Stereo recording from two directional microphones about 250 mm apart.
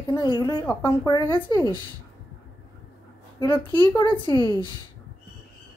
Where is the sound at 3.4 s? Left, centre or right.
Centre.